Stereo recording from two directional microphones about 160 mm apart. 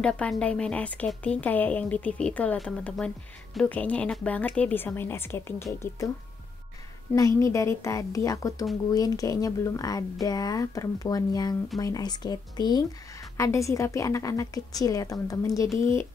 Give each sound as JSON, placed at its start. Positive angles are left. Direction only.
{"t": 0.0, "sound": "speech", "side_deg": 5}
{"t": 7.2, "sound": "a woman's voice", "side_deg": 20}